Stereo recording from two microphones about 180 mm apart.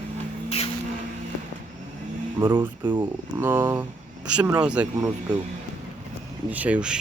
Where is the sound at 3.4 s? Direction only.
15° right (ahead or behind).